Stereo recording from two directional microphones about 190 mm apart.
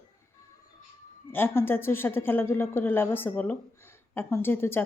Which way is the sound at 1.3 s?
10° left (ahead or behind).